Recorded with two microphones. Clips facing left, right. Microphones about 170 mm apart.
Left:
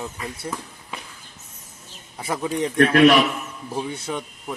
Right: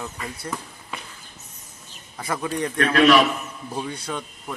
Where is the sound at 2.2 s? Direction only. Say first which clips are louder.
Left 2 dB; 10° left (ahead or behind).